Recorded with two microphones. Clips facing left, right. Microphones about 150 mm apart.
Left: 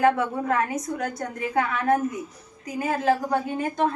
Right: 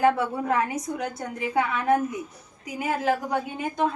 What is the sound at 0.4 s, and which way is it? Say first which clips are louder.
Speech: even; 15° right (ahead or behind).